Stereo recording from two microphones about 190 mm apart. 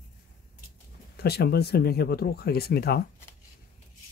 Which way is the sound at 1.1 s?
55° left (ahead or behind).